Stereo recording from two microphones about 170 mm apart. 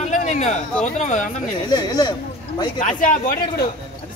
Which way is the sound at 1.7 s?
25° left (ahead or behind).